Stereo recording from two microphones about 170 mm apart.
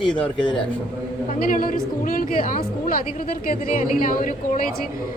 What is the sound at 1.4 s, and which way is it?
Speech, 55° left (ahead or behind).